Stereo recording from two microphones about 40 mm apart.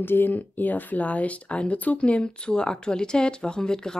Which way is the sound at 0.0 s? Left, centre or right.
Left.